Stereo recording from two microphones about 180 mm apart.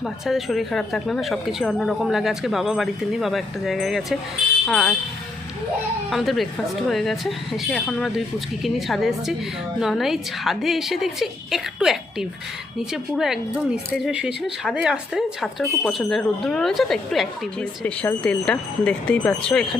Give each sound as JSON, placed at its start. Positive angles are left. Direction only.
{"t": 0.0, "sound": "speech", "side_deg": 0}
{"t": 6.1, "sound": "speech", "side_deg": 0}